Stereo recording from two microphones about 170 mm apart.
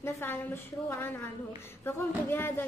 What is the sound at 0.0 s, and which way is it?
A woman's voice, 15° left (ahead or behind).